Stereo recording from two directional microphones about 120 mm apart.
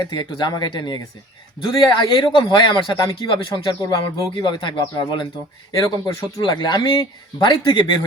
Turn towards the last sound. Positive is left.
turn(degrees=40)  # may be behind; listen again after turning